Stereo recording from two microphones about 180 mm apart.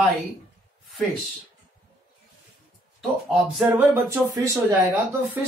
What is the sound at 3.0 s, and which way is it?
Speech, centre (ahead or behind).